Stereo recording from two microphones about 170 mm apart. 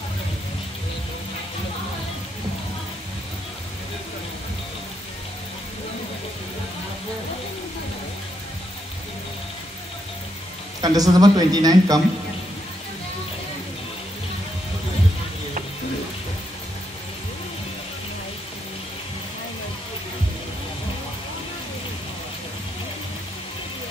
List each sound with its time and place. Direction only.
10.8 s a man's voice: 20° right (ahead or behind)